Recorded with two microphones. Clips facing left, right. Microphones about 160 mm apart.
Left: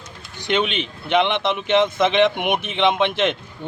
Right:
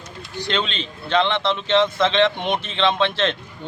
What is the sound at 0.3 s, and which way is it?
Speech, 15° left (ahead or behind).